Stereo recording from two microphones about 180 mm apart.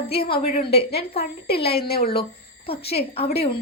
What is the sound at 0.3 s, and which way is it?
Speech, 30° left (ahead or behind).